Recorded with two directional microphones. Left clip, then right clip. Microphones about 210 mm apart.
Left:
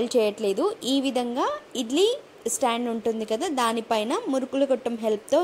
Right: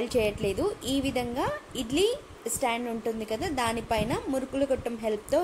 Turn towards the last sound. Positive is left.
turn(degrees=25)  # may be behind; listen again after turning